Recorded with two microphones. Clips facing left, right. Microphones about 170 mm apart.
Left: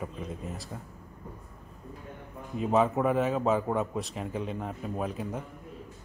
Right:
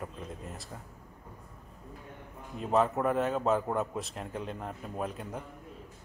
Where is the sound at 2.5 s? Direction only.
5° left (ahead or behind).